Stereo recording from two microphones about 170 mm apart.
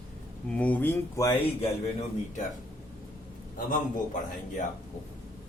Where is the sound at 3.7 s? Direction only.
50° left (ahead or behind).